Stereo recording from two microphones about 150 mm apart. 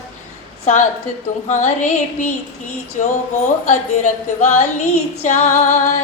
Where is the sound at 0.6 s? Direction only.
50° left (ahead or behind).